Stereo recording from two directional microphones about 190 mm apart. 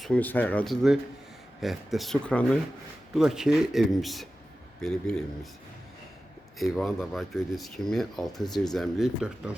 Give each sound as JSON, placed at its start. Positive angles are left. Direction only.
{"t": 0.0, "sound": "speech", "side_deg": 5}
{"t": 6.6, "sound": "speech", "side_deg": 0}